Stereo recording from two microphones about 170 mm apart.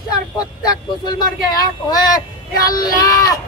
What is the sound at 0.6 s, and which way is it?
Speech, 25° left (ahead or behind).